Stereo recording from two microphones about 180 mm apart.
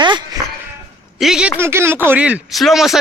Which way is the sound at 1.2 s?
5° right (ahead or behind).